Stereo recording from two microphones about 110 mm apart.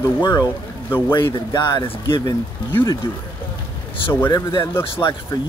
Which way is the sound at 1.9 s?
45° left (ahead or behind).